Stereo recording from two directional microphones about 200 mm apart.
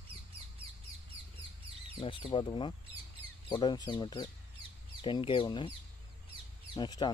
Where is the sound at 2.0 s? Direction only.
25° left (ahead or behind).